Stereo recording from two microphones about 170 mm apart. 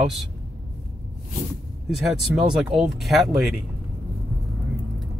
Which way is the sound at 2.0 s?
Centre (ahead or behind).